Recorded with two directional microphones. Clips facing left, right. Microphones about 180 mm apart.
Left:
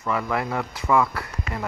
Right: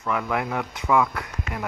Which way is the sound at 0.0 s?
Centre (ahead or behind).